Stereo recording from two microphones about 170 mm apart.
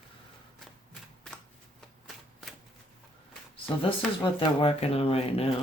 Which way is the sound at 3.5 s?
30° left (ahead or behind).